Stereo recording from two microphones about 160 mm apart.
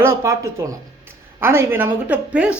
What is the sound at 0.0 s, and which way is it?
A man's voice, 15° right (ahead or behind).